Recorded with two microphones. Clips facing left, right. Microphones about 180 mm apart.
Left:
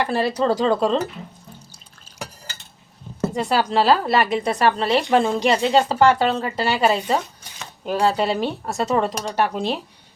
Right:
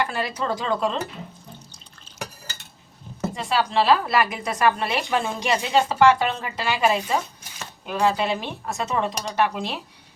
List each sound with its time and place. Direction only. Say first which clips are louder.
0.0 s a woman's voice: left 6 dB; 30° left (ahead or behind)
3.3 s a woman's voice: left 3 dB; 40° left (ahead or behind)